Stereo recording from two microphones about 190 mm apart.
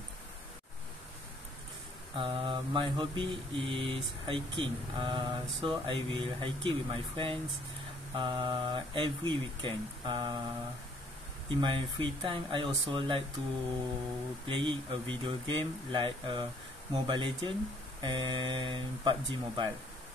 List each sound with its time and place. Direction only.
2.1 s mantra: 25° right (ahead or behind)
11.4 s mantra: 25° right (ahead or behind)
14.4 s mantra: 25° right (ahead or behind)